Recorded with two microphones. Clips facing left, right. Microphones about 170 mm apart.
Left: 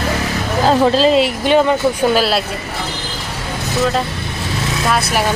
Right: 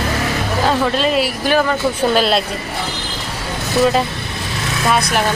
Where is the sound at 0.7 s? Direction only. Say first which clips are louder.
Left 6 dB; 30° left (ahead or behind).